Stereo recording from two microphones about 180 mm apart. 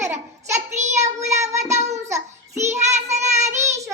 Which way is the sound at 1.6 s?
40° right (ahead or behind).